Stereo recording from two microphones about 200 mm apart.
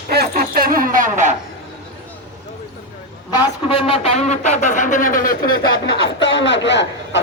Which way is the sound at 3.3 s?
25° left (ahead or behind).